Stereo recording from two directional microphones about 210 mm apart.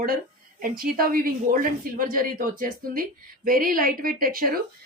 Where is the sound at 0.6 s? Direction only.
45° right (ahead or behind).